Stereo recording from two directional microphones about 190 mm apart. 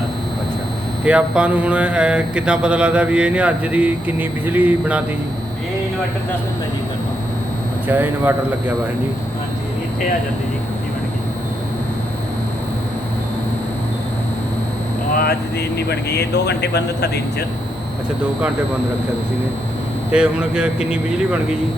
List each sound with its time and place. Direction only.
1.0 s speech: 5° right (ahead or behind)
7.9 s speech: 10° right (ahead or behind)
15.2 s speech: 60° left (ahead or behind)
20.1 s speech: 5° right (ahead or behind)